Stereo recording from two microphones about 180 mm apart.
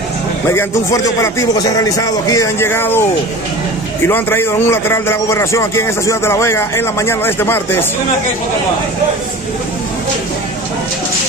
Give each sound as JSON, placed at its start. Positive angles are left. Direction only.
{"t": 0.5, "sound": "a man's voice", "side_deg": 15}
{"t": 4.1, "sound": "a man's voice", "side_deg": 10}